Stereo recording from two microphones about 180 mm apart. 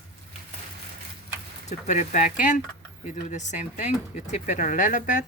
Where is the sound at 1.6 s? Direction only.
40° left (ahead or behind).